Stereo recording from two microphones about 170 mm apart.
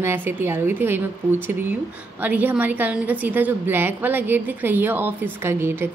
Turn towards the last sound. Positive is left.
turn(degrees=-15)  # may be behind; listen again after turning